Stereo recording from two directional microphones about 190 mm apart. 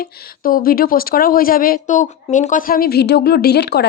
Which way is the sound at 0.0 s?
50° left (ahead or behind).